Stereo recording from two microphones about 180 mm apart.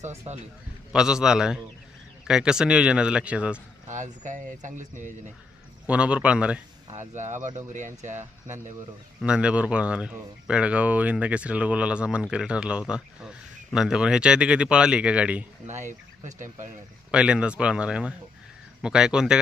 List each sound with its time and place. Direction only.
0.3 s speech: 35° right (ahead or behind)
0.9 s speech: 5° right (ahead or behind)
3.8 s speech: 45° right (ahead or behind)
5.8 s speech: 5° right (ahead or behind)
7.1 s speech: 40° right (ahead or behind)
9.2 s speech: 5° right (ahead or behind)
15.9 s speech: 45° right (ahead or behind)
17.1 s speech: 5° right (ahead or behind)